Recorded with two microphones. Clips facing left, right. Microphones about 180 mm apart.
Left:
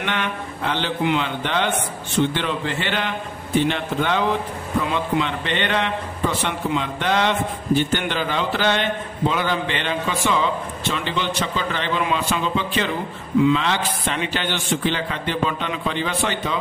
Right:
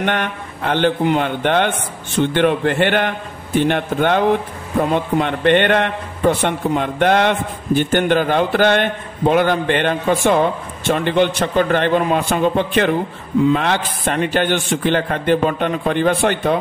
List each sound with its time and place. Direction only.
0.0 s a man's voice: 50° right (ahead or behind)